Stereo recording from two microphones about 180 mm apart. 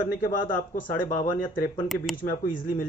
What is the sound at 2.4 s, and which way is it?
Speech, 50° left (ahead or behind).